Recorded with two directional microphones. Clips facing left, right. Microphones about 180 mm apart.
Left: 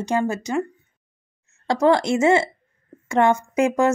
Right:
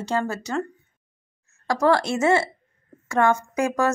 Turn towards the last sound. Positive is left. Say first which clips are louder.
# left 4 dB
turn(degrees=20)  # may be behind; listen again after turning